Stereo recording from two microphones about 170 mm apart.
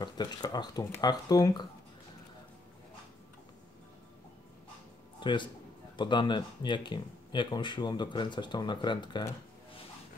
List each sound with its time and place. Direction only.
0.0 s speech: 25° left (ahead or behind)
5.2 s a man's voice: 30° left (ahead or behind)